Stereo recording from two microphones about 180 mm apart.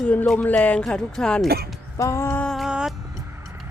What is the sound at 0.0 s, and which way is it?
Speech, 5° left (ahead or behind).